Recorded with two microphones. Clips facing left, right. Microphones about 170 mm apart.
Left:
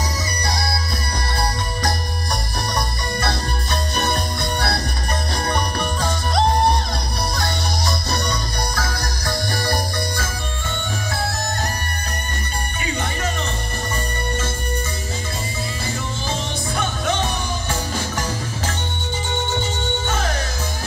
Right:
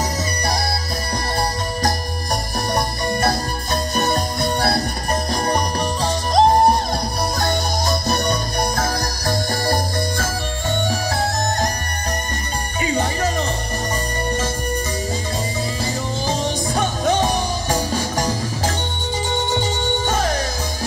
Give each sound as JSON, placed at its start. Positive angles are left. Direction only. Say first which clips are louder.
{"t": 2.7, "sound": "music", "louder": "right 5 dB", "side_deg": -45}
{"t": 7.3, "sound": "music", "louder": "right 4 dB", "side_deg": -50}
{"t": 16.3, "sound": "music", "louder": "right 5 dB", "side_deg": -40}